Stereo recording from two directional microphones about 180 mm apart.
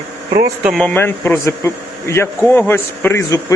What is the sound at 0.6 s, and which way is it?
Speech, centre (ahead or behind).